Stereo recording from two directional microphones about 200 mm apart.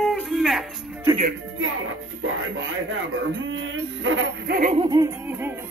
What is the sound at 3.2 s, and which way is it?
Speech, 70° right (ahead or behind).